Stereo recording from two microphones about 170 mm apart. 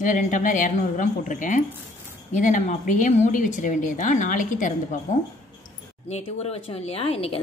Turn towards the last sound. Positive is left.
turn(degrees=35)  # may be behind; listen again after turning